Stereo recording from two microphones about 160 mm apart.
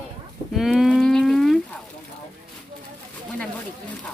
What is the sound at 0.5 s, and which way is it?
Moo, centre (ahead or behind).